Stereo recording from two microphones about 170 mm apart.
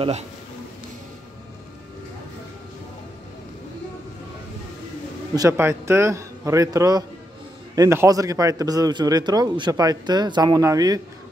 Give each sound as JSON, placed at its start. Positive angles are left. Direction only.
{"t": 5.3, "sound": "a man's voice", "side_deg": -20}